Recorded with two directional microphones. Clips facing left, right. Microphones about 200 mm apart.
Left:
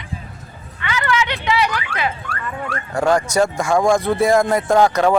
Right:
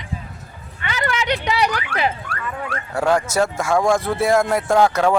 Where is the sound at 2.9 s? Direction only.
5° right (ahead or behind).